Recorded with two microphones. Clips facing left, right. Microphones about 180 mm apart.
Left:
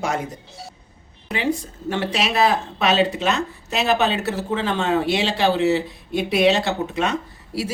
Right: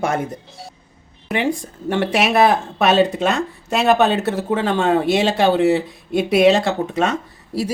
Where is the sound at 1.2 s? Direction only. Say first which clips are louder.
Right 3 dB; 55° right (ahead or behind).